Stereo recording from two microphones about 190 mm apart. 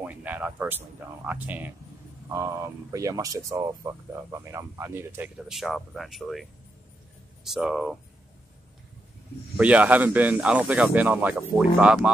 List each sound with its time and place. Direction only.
0.0 s speech: 10° right (ahead or behind)
5.5 s speech: centre (ahead or behind)
9.6 s speech: 5° right (ahead or behind)